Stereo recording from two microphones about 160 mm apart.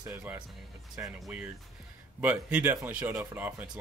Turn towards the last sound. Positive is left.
turn(degrees=-5)  # may be behind; listen again after turning